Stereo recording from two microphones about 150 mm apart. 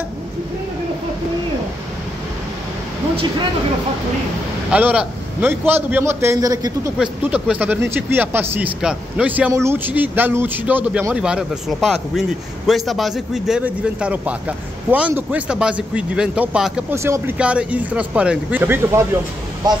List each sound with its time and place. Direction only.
4.6 s a man's voice: 10° right (ahead or behind); by 6.9 s 25° right (ahead or behind)
7.0 s a man's voice: 5° right (ahead or behind)
16.9 s a man's voice: 15° right (ahead or behind)